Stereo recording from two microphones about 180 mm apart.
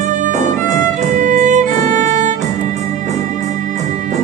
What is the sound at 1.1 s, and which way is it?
Violin, 45° right (ahead or behind).